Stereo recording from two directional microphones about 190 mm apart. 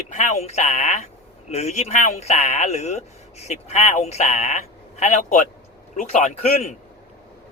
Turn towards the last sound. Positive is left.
turn(degrees=40)  # may be behind; listen again after turning